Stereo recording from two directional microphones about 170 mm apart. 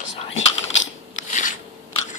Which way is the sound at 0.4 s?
90° left.